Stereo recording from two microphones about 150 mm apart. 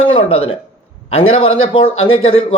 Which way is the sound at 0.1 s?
40° left (ahead or behind).